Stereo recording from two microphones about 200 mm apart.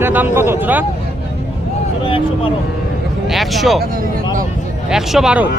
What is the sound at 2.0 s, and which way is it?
Speech, 25° left (ahead or behind).